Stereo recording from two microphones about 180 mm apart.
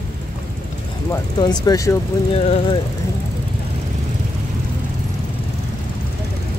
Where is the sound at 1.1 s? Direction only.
20° left (ahead or behind).